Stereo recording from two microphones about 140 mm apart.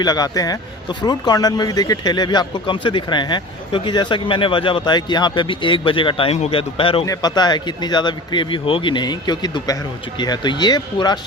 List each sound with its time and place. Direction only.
0.0 s speech: 25° left (ahead or behind)
7.0 s speech: 25° left (ahead or behind)